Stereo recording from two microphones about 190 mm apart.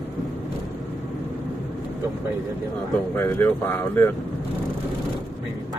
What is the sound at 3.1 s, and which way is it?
Speech, 10° left (ahead or behind).